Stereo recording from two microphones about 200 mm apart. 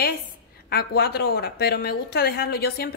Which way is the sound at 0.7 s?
50° left (ahead or behind).